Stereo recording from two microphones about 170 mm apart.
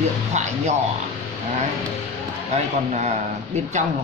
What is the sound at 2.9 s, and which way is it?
Speech, 40° right (ahead or behind).